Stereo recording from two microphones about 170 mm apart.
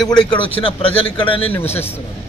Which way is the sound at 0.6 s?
30° left (ahead or behind).